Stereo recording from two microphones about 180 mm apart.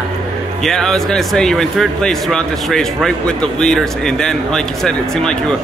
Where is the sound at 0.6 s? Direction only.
Centre (ahead or behind).